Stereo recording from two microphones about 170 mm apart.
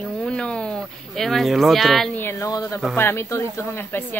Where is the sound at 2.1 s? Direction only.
15° left (ahead or behind).